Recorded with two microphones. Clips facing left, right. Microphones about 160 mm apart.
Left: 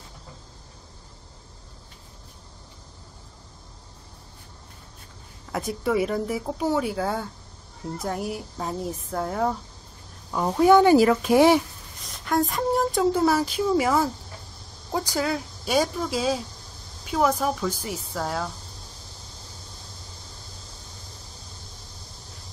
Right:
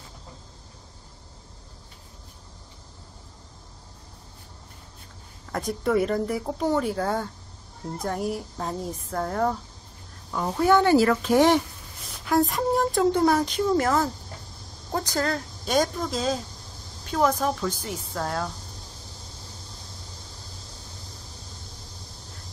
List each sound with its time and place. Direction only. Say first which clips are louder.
5.5 s speech: right 1 dB; 5° left (ahead or behind)
10.3 s speech: left 4 dB; 15° left (ahead or behind)